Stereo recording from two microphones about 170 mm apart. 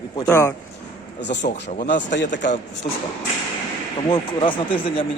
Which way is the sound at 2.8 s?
50° left (ahead or behind).